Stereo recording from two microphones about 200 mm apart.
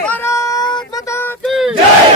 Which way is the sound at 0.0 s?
10° left (ahead or behind).